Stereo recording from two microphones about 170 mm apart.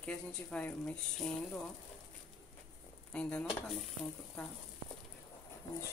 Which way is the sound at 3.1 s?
5° left (ahead or behind).